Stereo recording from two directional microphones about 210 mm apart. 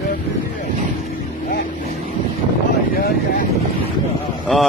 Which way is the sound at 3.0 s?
45° left (ahead or behind).